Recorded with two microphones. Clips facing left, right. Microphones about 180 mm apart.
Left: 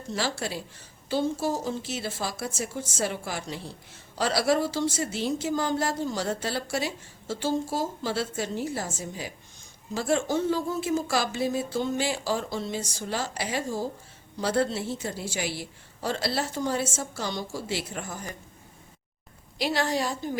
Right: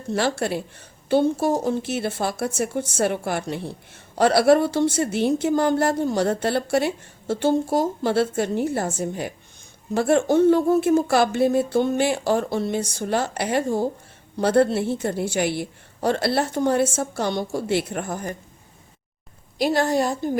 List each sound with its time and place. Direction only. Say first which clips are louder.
0.1 s a woman's voice: right 8 dB; 60° right (ahead or behind)
19.5 s a woman's voice: right 7 dB; 50° right (ahead or behind)